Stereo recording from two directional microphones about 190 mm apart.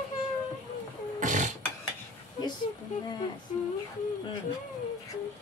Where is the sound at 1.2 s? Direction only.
40° right (ahead or behind).